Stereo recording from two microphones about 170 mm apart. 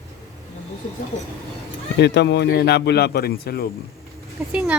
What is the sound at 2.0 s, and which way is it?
Speech, 85° left.